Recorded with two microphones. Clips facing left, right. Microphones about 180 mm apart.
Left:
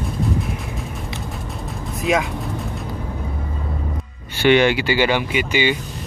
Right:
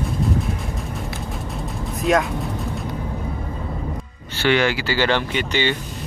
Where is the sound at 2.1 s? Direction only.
5° left (ahead or behind).